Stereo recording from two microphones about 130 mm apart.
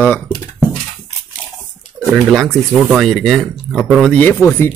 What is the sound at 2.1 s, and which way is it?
Speech, centre (ahead or behind).